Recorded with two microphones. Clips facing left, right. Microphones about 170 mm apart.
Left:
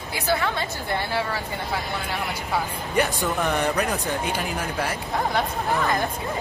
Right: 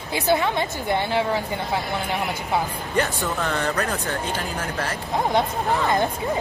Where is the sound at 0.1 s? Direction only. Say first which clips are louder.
Right 4 dB; 20° right (ahead or behind).